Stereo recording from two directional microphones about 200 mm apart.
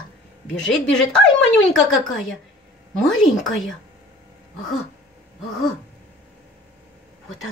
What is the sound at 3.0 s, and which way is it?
Speech, centre (ahead or behind).